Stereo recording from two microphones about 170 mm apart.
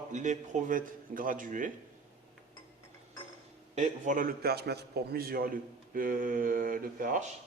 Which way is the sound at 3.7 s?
45° right (ahead or behind).